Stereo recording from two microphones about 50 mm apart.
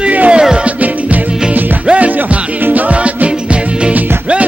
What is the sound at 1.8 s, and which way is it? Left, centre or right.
Music, right.